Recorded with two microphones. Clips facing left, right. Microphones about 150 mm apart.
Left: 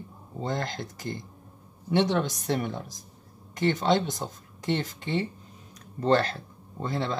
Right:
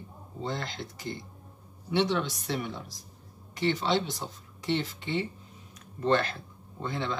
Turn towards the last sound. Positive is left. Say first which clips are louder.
# left 3 dB
turn(degrees=40)  # may be behind; listen again after turning